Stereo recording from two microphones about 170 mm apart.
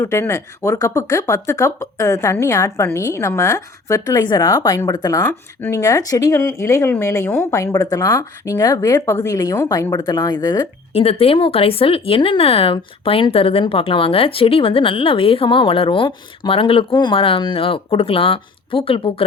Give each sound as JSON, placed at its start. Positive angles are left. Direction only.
{"t": 0.0, "sound": "speech", "side_deg": 15}
{"t": 10.9, "sound": "speech", "side_deg": 35}